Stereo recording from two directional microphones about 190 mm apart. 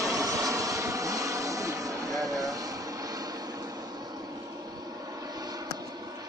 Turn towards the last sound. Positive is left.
turn(degrees=-20)  # may be behind; listen again after turning